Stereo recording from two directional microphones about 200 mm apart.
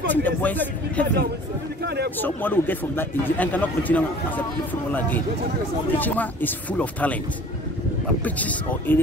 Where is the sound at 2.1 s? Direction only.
10° left (ahead or behind).